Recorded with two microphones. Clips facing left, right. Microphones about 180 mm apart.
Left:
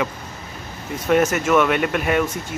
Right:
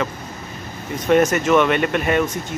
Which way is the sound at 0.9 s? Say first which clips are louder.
Right 2 dB; 5° left (ahead or behind).